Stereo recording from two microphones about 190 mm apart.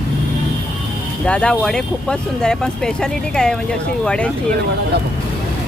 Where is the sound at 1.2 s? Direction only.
5° left (ahead or behind).